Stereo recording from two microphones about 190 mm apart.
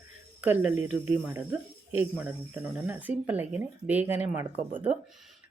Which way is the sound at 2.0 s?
10° right (ahead or behind).